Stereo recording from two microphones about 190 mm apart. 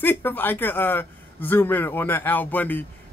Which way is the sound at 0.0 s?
10° left (ahead or behind).